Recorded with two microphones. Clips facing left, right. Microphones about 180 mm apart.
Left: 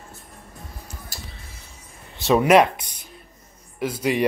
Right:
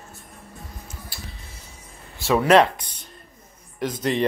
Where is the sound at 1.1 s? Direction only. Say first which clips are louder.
Left 1 dB; 45° left (ahead or behind).